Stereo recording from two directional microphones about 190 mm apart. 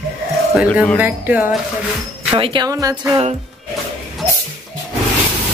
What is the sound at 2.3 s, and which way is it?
Speech, 25° right (ahead or behind).